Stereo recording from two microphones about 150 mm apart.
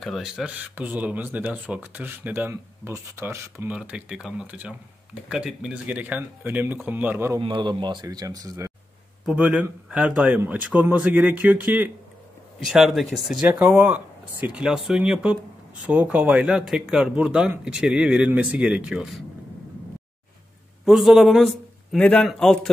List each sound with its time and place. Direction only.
0.0 s speech: centre (ahead or behind); by 3.7 s 15° right (ahead or behind)
3.7 s speech: 5° right (ahead or behind)
7.3 s speech: 30° right (ahead or behind)
9.2 s speech: 10° right (ahead or behind)
20.8 s speech: centre (ahead or behind)